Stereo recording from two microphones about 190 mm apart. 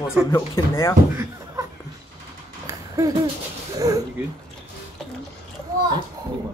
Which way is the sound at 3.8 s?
20° right (ahead or behind).